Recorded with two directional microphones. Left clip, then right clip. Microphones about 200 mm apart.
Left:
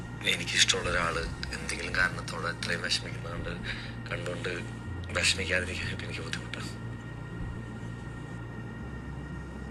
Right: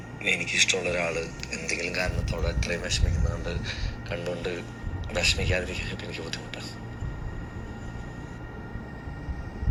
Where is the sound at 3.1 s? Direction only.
30° left (ahead or behind).